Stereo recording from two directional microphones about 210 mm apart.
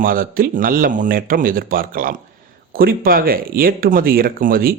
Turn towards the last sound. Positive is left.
turn(degrees=-45)  # may be behind; listen again after turning